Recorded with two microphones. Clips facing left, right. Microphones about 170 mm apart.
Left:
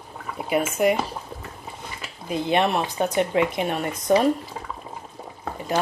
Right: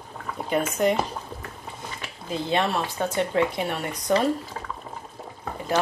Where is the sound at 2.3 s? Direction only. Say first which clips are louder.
Left 3 dB; 20° left (ahead or behind).